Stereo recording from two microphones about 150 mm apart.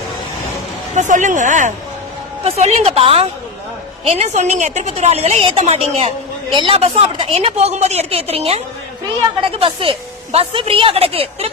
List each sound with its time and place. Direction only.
0.9 s speech: 55° right (ahead or behind)
2.4 s a woman's voice: 45° right (ahead or behind)
6.5 s a woman's voice: 35° right (ahead or behind)